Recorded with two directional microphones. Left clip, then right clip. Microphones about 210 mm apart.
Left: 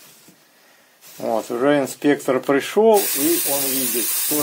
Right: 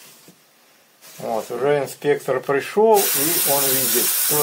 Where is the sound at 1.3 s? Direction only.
50° left (ahead or behind).